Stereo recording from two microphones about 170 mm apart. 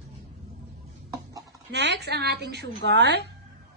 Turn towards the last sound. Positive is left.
turn(degrees=-80)